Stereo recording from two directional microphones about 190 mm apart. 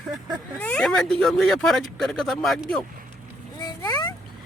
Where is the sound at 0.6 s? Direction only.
5° left (ahead or behind).